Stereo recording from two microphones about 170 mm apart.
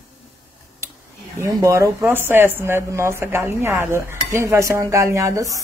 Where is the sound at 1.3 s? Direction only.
15° right (ahead or behind).